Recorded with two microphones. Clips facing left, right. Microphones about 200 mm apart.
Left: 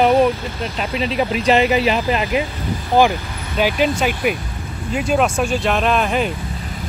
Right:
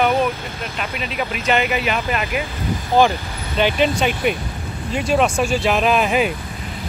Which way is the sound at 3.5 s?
5° left (ahead or behind).